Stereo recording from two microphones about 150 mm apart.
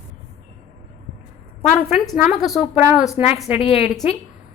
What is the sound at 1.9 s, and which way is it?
A woman's voice, 5° right (ahead or behind).